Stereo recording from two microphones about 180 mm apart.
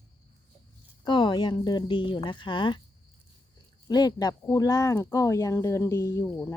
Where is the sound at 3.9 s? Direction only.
20° left (ahead or behind).